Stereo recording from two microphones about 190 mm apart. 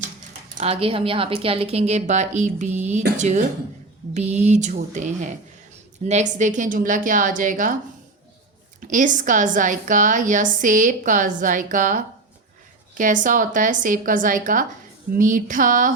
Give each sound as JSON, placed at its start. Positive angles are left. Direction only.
{"t": 0.5, "sound": "a woman's voice", "side_deg": -35}
{"t": 8.9, "sound": "a woman's voice", "side_deg": -45}